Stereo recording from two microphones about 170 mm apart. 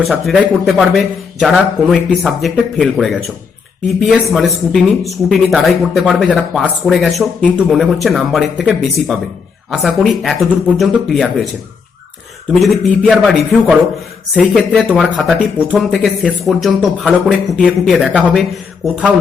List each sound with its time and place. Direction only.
0.0 s speech: centre (ahead or behind)
12.5 s speech: 5° left (ahead or behind)
14.8 s speech: 5° right (ahead or behind)